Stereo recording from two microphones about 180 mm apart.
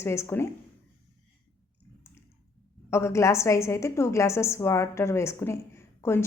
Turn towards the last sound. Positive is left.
turn(degrees=15)  # may be behind; listen again after turning